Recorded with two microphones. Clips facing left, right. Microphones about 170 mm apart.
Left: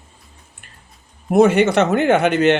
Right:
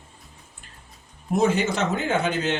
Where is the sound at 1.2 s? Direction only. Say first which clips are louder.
Left 8 dB; 70° left (ahead or behind).